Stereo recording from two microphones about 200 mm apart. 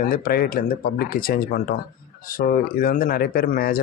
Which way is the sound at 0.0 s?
45° left (ahead or behind).